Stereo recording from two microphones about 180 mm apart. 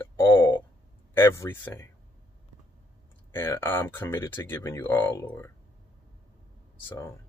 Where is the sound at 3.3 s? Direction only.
15° left (ahead or behind).